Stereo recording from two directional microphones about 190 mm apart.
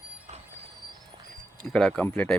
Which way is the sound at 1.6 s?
5° left (ahead or behind).